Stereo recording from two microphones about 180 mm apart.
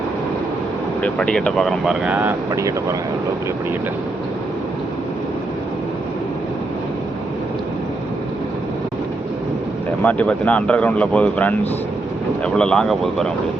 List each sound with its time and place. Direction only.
1.0 s speech: 5° left (ahead or behind); by 2.7 s 15° right (ahead or behind)
10.0 s speech: 10° left (ahead or behind)